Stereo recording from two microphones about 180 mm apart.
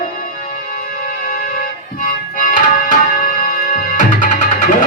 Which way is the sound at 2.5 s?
45° left (ahead or behind).